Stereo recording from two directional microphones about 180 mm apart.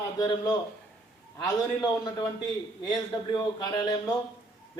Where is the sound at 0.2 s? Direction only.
20° left (ahead or behind).